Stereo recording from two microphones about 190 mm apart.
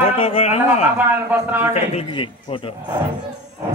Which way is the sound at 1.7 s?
30° left (ahead or behind).